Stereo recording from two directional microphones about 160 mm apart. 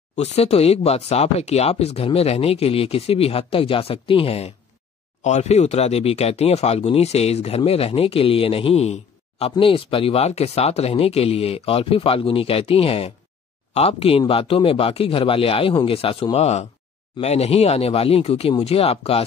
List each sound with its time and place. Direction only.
0.4 s speech: 40° left (ahead or behind)